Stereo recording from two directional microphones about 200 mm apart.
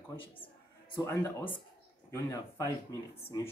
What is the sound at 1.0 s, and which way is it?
Speech, 10° left (ahead or behind).